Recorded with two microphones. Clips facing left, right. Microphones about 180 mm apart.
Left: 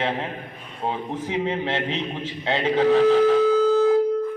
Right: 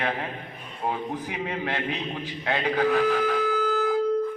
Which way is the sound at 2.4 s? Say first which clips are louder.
Left 5 dB; 25° left (ahead or behind).